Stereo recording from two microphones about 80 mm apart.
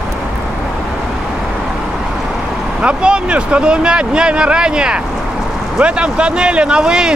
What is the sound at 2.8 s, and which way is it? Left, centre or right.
Speech, centre.